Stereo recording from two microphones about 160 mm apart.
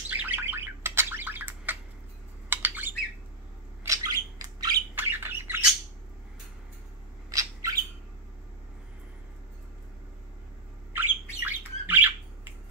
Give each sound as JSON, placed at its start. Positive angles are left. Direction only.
{"t": 0.1, "sound": "bird", "side_deg": -10}
{"t": 2.5, "sound": "squawk", "side_deg": -10}
{"t": 3.8, "sound": "bird", "side_deg": -20}
{"t": 4.9, "sound": "bird", "side_deg": -15}
{"t": 7.2, "sound": "squawk", "side_deg": -20}
{"t": 10.9, "sound": "squawk", "side_deg": -15}